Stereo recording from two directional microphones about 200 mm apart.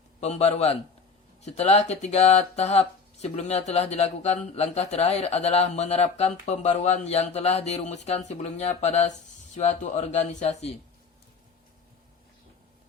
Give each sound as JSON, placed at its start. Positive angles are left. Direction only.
{"t": 0.2, "sound": "speech", "side_deg": 30}